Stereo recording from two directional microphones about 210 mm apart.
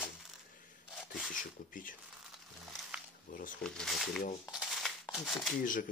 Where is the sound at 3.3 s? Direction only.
40° left (ahead or behind).